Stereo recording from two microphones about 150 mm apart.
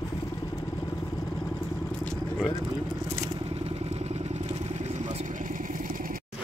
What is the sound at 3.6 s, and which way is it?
Vehicle, 45° right (ahead or behind).